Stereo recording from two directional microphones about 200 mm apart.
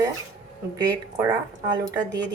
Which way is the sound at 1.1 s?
20° right (ahead or behind).